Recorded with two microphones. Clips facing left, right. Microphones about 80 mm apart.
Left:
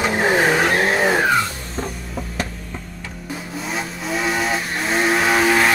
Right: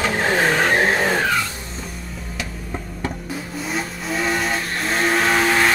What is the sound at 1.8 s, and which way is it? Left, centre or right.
Vehicle, left.